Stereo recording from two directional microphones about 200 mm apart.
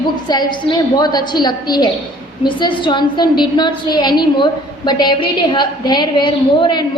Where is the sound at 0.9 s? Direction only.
20° left (ahead or behind).